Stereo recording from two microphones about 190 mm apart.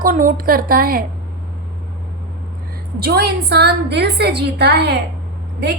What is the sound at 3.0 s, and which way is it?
A woman's voice, 60° right (ahead or behind).